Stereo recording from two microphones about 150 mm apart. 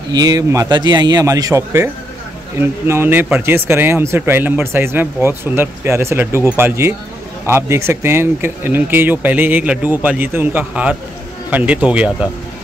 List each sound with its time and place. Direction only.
0.1 s a man's voice: 25° right (ahead or behind); by 12.3 s 10° right (ahead or behind)